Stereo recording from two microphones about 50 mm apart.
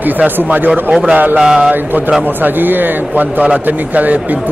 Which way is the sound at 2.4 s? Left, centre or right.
Right.